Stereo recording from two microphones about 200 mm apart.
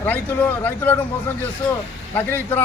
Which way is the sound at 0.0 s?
10° left (ahead or behind).